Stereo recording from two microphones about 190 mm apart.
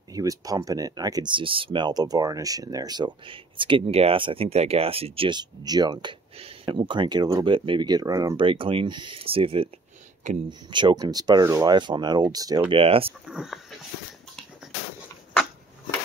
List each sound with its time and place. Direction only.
0.1 s speech: 20° right (ahead or behind)
10.7 s speech: 25° right (ahead or behind)
13.3 s speech: centre (ahead or behind)